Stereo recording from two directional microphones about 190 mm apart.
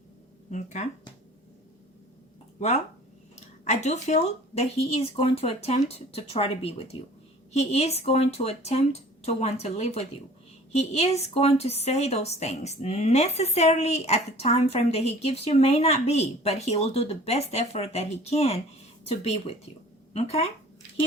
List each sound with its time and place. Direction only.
0.5 s a woman's voice: 40° left (ahead or behind)
2.6 s a woman's voice: 35° left (ahead or behind)